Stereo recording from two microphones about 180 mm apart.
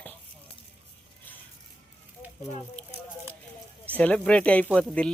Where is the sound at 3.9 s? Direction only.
10° left (ahead or behind).